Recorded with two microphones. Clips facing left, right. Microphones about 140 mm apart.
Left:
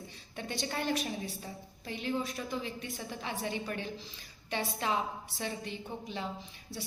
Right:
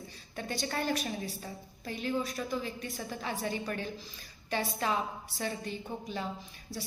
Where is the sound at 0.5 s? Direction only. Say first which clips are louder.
Right 1 dB; 25° left (ahead or behind).